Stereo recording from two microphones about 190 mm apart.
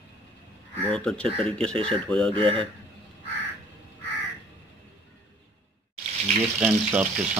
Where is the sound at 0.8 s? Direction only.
5° left (ahead or behind).